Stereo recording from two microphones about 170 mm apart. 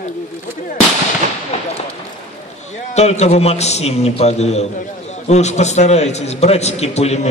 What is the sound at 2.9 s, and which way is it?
A man's voice, 40° left (ahead or behind).